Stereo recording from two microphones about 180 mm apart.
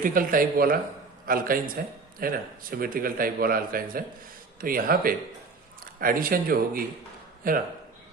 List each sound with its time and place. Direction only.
0.0 s speech: 50° right (ahead or behind)